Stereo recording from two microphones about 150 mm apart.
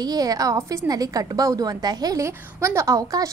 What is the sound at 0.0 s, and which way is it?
A woman's voice, 25° right (ahead or behind).